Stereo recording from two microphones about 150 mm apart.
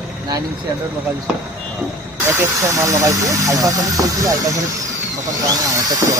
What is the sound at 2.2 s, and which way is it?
Speech, 20° right (ahead or behind).